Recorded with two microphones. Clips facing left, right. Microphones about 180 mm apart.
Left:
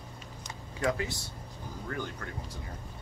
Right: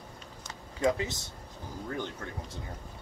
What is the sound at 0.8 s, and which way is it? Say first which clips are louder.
Speech: right 3 dB; 20° right (ahead or behind).